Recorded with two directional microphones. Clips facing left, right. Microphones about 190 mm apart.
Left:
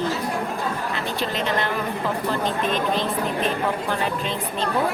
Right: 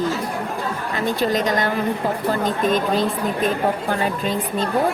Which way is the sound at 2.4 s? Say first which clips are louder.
Right 4 dB; 40° right (ahead or behind).